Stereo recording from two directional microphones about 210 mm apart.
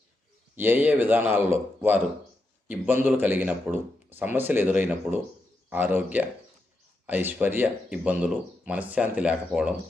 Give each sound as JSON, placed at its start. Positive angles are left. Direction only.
{"t": 0.5, "sound": "speech", "side_deg": -10}